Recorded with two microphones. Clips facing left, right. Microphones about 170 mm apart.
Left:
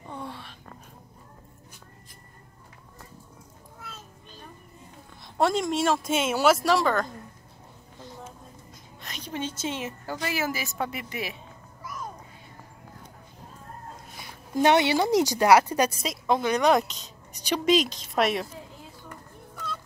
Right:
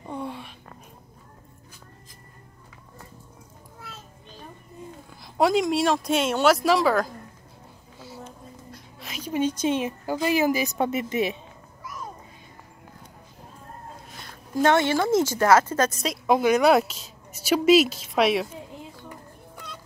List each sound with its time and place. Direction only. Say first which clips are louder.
0.1 s a sound: right 5 dB; 10° right (ahead or behind)
5.2 s a woman's voice: right 3 dB; centre (ahead or behind)
8.7 s a woman's voice: right 3 dB; 5° right (ahead or behind); by 11.3 s 20° right (ahead or behind)
14.1 s speech: even; 15° left (ahead or behind)
16.0 s a woman's voice: right 4 dB; 5° right (ahead or behind)